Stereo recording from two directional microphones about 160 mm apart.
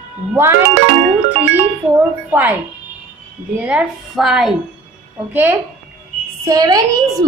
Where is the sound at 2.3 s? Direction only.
10° right (ahead or behind).